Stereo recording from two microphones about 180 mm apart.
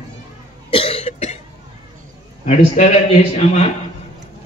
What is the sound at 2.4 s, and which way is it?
A man's voice, 40° left (ahead or behind).